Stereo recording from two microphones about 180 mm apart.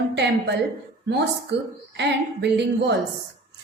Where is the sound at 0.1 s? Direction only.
70° right (ahead or behind).